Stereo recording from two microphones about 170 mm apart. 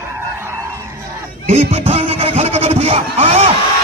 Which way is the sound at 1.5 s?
40° right (ahead or behind).